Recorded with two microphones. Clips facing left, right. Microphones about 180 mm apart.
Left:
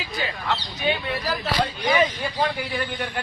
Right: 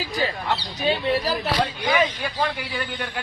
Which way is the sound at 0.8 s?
30° right (ahead or behind).